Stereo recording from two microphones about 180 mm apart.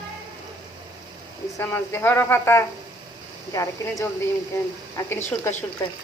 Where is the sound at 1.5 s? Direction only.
10° left (ahead or behind).